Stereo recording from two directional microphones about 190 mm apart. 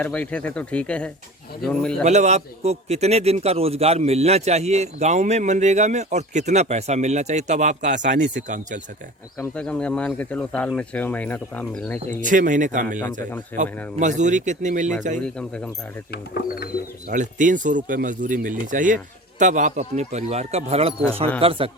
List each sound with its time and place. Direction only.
0.0 s speech: 5° left (ahead or behind)
2.0 s a man's voice: 35° right (ahead or behind)
9.4 s speech: 5° left (ahead or behind)
12.2 s speech: 45° right (ahead or behind)
13.5 s speech: 10° left (ahead or behind)
14.0 s a man's voice: 40° right (ahead or behind)
15.2 s speech: 5° left (ahead or behind)
16.1 s speech: 55° left (ahead or behind)
17.1 s a man's voice: 40° right (ahead or behind)